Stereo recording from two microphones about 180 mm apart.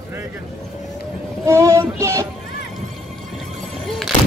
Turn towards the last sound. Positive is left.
turn(degrees=0)  # may be behind; listen again after turning